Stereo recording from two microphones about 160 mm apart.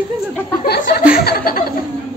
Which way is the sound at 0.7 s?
85° left.